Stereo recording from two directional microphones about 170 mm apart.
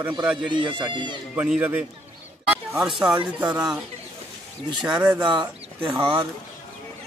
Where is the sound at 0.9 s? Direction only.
25° right (ahead or behind).